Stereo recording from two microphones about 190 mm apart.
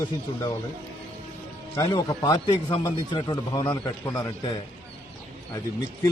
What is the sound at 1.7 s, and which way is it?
Speech, 15° left (ahead or behind).